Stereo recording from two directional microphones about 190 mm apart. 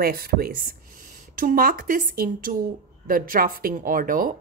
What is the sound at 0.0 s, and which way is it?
Speech, 50° right (ahead or behind).